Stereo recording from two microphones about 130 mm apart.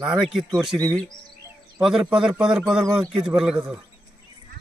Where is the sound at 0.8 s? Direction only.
10° left (ahead or behind).